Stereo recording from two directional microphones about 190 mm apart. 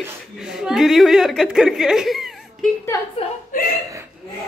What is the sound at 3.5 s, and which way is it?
Chuckle, 50° left (ahead or behind).